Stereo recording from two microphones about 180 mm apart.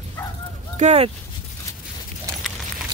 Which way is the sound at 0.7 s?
35° right (ahead or behind).